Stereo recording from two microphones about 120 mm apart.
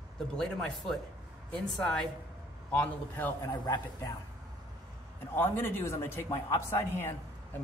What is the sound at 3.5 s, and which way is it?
Speech, 35° left (ahead or behind).